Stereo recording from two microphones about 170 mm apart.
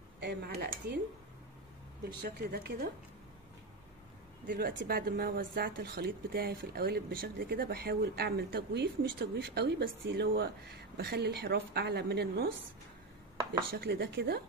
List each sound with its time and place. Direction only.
0.2 s speech: 75° right (ahead or behind)
2.0 s a woman's voice: 60° right (ahead or behind)
4.5 s speech: 60° right (ahead or behind); by 12.4 s 75° right (ahead or behind)
13.7 s speech: 70° right (ahead or behind)